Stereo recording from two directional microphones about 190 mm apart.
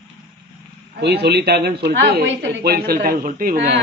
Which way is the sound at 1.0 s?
60° right (ahead or behind).